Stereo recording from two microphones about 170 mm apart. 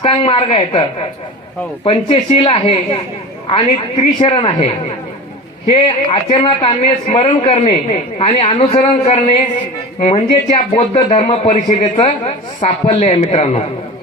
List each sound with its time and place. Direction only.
0.0 s a man's voice: 35° left (ahead or behind)
5.7 s a man's voice: 35° left (ahead or behind)
10.8 s a man's voice: 35° left (ahead or behind)